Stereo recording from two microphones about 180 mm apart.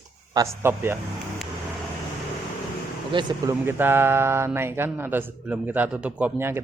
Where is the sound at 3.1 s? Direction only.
25° right (ahead or behind).